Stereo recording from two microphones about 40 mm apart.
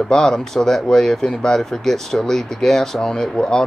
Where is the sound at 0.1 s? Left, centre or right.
Centre.